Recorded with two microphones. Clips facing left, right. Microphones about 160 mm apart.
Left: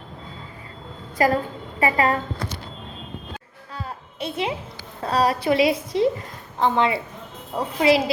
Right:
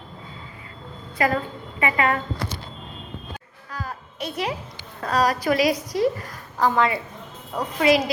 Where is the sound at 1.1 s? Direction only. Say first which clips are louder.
Left 3 dB; 35° left (ahead or behind).